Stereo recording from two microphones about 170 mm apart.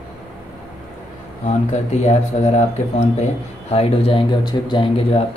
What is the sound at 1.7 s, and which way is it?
Speech, 40° left (ahead or behind).